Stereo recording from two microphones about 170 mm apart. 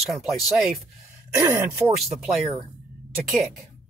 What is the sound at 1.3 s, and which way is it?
Speech, 15° right (ahead or behind).